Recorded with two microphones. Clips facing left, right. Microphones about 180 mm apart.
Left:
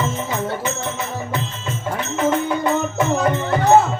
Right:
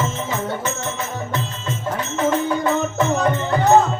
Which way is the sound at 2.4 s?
10° left (ahead or behind).